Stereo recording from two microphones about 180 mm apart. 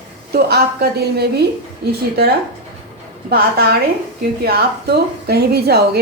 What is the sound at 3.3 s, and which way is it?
A woman's voice, 60° right (ahead or behind).